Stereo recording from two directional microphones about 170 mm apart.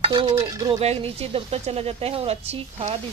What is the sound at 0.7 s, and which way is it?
A woman's voice, 35° right (ahead or behind).